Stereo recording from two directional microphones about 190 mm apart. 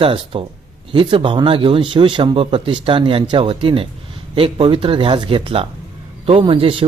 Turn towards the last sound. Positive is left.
turn(degrees=-30)  # may be behind; listen again after turning